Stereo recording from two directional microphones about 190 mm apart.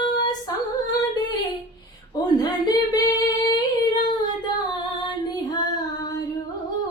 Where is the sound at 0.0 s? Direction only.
20° left (ahead or behind).